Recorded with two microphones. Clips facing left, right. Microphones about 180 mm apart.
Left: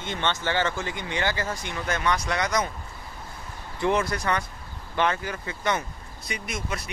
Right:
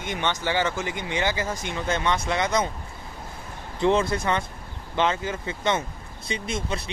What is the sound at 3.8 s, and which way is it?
Speech, 25° right (ahead or behind).